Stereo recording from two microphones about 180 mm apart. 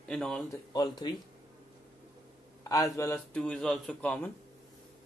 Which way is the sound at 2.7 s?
15° left (ahead or behind).